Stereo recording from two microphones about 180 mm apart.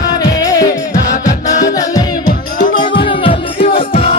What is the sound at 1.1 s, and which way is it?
Music, 45° left (ahead or behind).